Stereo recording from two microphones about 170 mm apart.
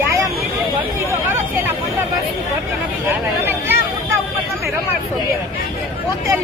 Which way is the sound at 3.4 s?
15° right (ahead or behind).